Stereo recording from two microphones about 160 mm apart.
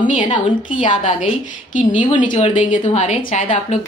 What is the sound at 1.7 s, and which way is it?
Speech, 55° left (ahead or behind).